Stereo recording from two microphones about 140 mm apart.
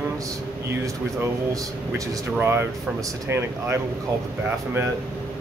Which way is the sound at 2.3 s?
15° right (ahead or behind).